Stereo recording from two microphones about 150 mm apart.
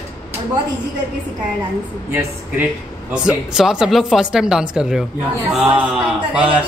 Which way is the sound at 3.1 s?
5° right (ahead or behind).